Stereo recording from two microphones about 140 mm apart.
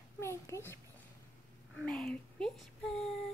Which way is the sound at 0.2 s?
20° left (ahead or behind).